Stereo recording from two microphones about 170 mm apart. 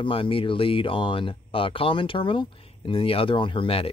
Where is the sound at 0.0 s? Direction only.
30° left (ahead or behind).